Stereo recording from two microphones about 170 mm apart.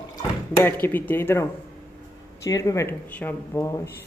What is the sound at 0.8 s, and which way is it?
Speech, 10° left (ahead or behind).